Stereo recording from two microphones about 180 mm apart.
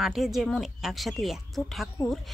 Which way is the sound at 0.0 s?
Centre (ahead or behind).